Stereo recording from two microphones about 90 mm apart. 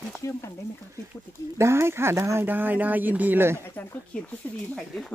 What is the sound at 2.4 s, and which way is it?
Speech, 20° right (ahead or behind).